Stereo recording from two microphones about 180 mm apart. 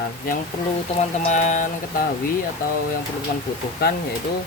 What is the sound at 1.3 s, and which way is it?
Speech, 45° left (ahead or behind).